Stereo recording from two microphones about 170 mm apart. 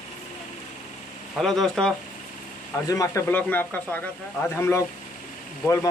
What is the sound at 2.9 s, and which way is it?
Speech, 20° left (ahead or behind).